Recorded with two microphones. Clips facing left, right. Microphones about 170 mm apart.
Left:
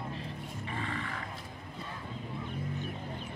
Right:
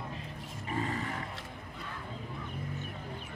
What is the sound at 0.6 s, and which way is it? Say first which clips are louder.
Roaring cats: right 4 dB; 40° right (ahead or behind).